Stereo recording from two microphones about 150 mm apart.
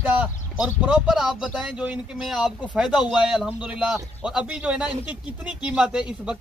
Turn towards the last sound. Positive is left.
turn(degrees=-5)  # may be behind; listen again after turning